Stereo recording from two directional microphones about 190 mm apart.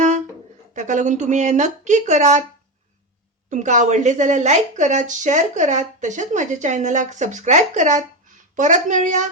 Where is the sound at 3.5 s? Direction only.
40° right (ahead or behind).